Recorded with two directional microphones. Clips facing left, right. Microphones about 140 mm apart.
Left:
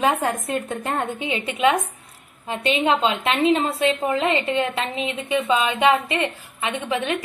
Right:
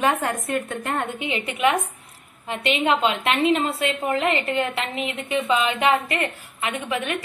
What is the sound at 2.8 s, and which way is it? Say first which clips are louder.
A woman's voice: even; 20° left (ahead or behind).